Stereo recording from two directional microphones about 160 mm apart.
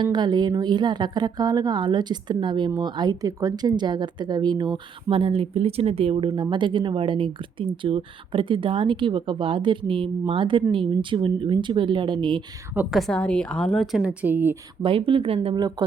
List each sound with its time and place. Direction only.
0.0 s speech: 25° right (ahead or behind)
12.7 s speech: 10° right (ahead or behind)
13.0 s a woman's voice: 5° left (ahead or behind)
14.0 s speech: 10° right (ahead or behind)
14.8 s speech: 35° right (ahead or behind)